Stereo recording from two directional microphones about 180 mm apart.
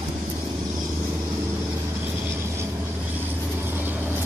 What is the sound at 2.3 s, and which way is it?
Vehicle, 15° right (ahead or behind).